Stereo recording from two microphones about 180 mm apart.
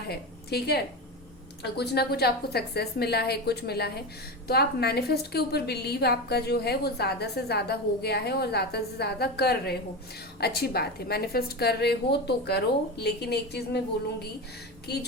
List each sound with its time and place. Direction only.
0.1 s a woman's voice: 60° left (ahead or behind)